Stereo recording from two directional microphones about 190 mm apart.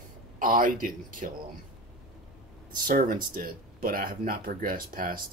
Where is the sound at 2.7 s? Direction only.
45° right (ahead or behind).